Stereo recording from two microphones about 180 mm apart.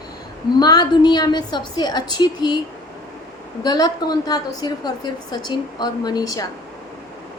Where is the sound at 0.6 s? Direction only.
20° left (ahead or behind).